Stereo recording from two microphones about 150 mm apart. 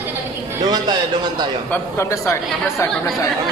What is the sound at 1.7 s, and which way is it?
Speech, 20° left (ahead or behind).